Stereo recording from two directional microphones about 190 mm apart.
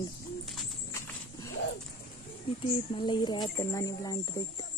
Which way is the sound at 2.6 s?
25° left (ahead or behind).